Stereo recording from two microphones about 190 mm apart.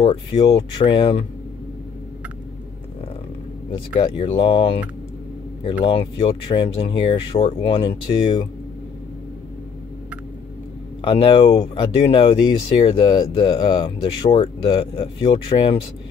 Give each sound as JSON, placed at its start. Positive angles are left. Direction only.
{"t": 0.0, "sound": "speech", "side_deg": 30}
{"t": 3.7, "sound": "speech", "side_deg": 30}
{"t": 5.9, "sound": "speech", "side_deg": 30}
{"t": 11.0, "sound": "speech", "side_deg": 25}